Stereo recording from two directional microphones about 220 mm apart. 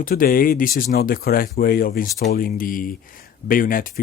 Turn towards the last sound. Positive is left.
turn(degrees=40)  # may be behind; listen again after turning